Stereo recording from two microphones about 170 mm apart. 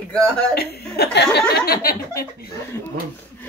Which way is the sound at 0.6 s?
70° left (ahead or behind).